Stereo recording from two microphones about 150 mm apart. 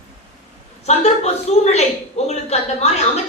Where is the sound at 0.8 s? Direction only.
45° left (ahead or behind).